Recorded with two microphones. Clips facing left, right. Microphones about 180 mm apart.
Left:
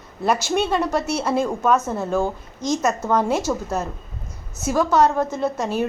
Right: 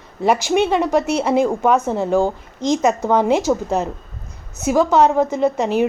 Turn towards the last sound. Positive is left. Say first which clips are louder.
# right 5 dB
turn(degrees=-15)  # may be behind; listen again after turning